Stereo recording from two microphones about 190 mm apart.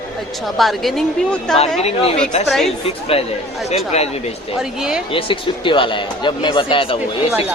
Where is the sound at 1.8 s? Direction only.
30° left (ahead or behind).